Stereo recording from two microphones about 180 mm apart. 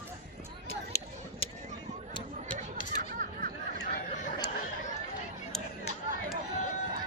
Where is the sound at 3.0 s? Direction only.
50° right (ahead or behind).